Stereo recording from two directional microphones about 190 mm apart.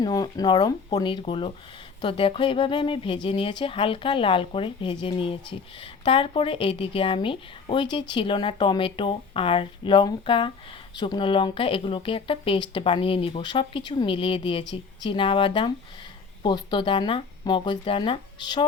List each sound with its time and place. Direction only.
0.0 s speech: 20° left (ahead or behind)